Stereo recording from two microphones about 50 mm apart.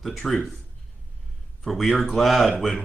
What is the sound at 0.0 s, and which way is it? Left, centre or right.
Speech, centre.